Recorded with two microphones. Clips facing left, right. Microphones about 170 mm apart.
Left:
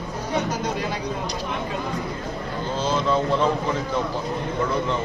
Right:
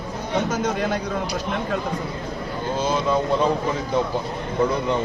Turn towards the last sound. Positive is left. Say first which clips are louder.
# right 1 dB
turn(degrees=-10)  # may be behind; listen again after turning